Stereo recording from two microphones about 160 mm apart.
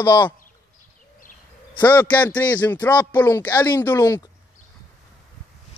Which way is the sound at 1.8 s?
10° left (ahead or behind).